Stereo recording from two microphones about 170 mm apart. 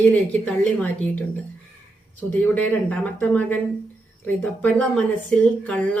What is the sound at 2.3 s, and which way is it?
Speech, 10° left (ahead or behind).